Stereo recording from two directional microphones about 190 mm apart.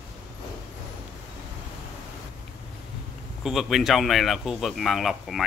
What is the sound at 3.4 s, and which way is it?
Speech, centre (ahead or behind).